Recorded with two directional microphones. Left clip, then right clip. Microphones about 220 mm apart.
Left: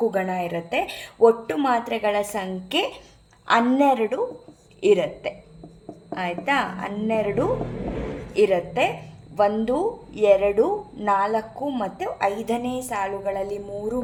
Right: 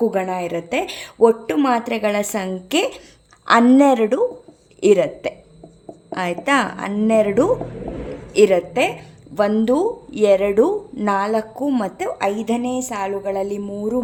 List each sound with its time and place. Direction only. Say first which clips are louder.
0.0 s a woman's voice: right 3 dB; 40° right (ahead or behind)